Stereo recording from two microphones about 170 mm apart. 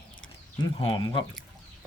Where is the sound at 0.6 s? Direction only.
25° left (ahead or behind).